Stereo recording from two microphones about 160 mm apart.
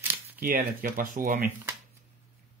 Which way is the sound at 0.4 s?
60° right (ahead or behind).